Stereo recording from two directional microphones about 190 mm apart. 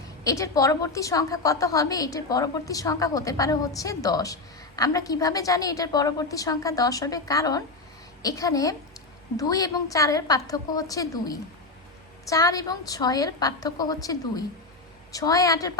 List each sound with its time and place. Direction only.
0.3 s a woman's voice: 15° left (ahead or behind)